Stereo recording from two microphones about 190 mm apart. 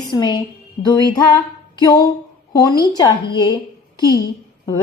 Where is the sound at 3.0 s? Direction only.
25° left (ahead or behind).